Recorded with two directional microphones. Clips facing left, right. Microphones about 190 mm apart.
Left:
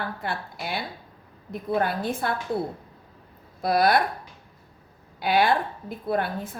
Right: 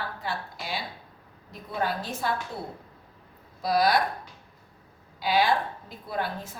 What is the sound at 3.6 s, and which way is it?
Speech, 55° left (ahead or behind).